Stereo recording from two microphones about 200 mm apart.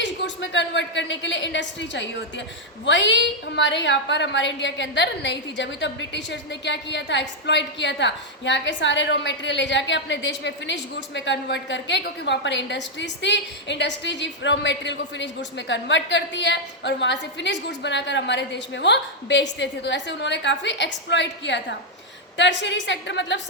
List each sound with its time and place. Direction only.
0.5 s a woman's voice: 65° left (ahead or behind)